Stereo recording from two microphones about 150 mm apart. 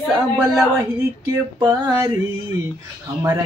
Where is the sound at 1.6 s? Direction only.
30° right (ahead or behind).